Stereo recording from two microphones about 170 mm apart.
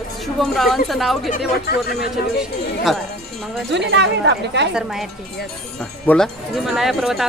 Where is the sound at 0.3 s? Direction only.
Centre (ahead or behind).